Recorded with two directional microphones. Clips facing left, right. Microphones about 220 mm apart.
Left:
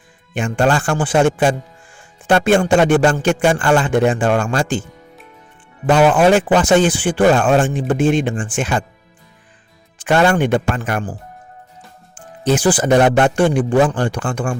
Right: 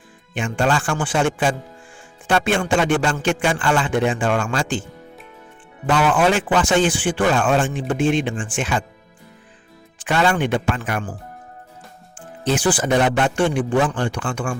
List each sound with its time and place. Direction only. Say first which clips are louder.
0.3 s a man's voice: left 4 dB; 40° left (ahead or behind)
5.8 s a man's voice: left 5 dB; 40° left (ahead or behind)
10.1 s a man's voice: left 5 dB; 45° left (ahead or behind)
12.5 s a man's voice: left 5 dB; 45° left (ahead or behind)